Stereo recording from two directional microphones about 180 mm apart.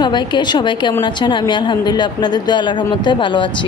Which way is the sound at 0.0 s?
25° left (ahead or behind).